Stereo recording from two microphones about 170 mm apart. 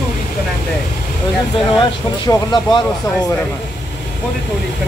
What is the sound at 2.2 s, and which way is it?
Speech, 25° left (ahead or behind).